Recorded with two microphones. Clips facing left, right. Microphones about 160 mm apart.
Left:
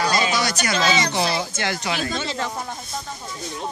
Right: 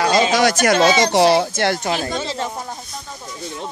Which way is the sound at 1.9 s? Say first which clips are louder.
Right 3 dB; 30° right (ahead or behind).